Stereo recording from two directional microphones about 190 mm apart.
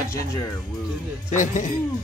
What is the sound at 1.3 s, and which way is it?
Speech, 40° left (ahead or behind).